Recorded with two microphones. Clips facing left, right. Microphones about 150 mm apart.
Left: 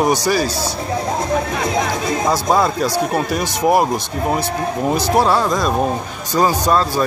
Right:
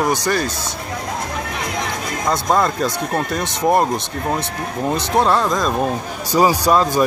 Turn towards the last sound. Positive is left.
turn(degrees=-10)  # may be behind; listen again after turning